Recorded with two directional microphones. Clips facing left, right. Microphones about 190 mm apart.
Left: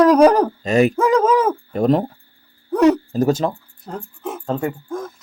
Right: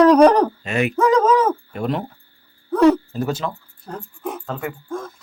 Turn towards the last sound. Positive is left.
turn(degrees=30)  # may be behind; listen again after turning